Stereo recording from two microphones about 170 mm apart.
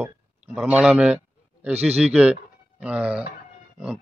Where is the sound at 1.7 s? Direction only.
35° right (ahead or behind).